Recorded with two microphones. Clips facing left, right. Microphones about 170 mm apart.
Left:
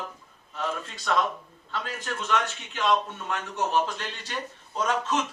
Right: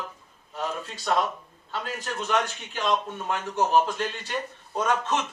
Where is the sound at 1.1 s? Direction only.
45° right (ahead or behind).